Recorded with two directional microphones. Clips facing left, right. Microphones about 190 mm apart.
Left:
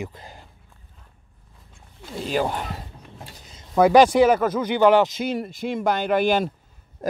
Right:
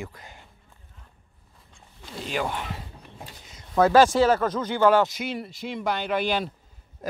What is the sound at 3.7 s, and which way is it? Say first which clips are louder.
Speech: left 3 dB; 15° left (ahead or behind).